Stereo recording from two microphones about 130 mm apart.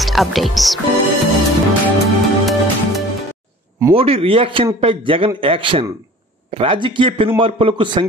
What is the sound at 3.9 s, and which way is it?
A man's voice, 45° right (ahead or behind).